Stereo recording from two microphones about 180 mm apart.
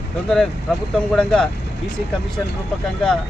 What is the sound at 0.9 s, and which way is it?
Speech, 5° left (ahead or behind).